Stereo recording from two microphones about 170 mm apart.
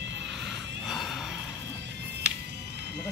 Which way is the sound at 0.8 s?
Centre (ahead or behind).